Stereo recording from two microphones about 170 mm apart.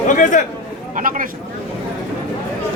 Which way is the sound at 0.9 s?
50° right (ahead or behind).